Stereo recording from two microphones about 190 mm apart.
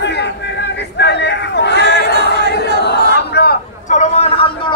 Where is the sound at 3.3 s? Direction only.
60° left (ahead or behind).